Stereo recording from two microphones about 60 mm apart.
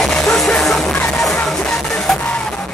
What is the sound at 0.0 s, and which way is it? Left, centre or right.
Music, centre.